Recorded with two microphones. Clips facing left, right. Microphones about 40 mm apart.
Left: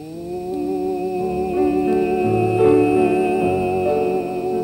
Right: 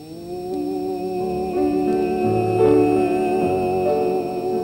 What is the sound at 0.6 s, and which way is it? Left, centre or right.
Music, left.